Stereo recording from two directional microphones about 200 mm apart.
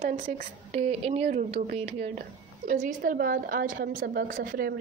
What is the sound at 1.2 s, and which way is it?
A woman's voice, 45° right (ahead or behind).